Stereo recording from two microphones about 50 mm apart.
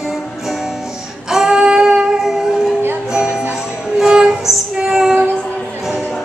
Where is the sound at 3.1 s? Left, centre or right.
Centre.